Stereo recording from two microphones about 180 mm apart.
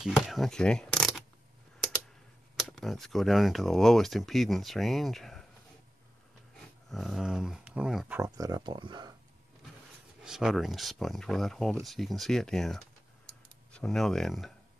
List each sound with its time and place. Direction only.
0.0 s speech: centre (ahead or behind)
2.7 s speech: centre (ahead or behind)
6.9 s speech: centre (ahead or behind)
8.2 s speech: 20° right (ahead or behind)
10.2 s speech: 5° right (ahead or behind)
13.3 s camera: 5° left (ahead or behind)